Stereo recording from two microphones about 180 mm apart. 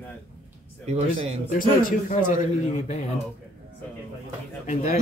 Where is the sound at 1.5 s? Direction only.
50° left (ahead or behind).